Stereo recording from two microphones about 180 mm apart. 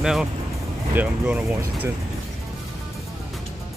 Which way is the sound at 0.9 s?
10° right (ahead or behind).